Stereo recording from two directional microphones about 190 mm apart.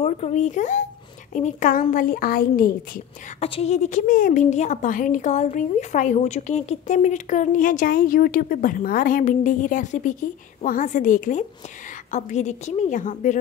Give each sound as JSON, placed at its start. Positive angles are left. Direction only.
{"t": 0.0, "sound": "a child's voice", "side_deg": 35}
{"t": 3.3, "sound": "a woman's voice", "side_deg": 30}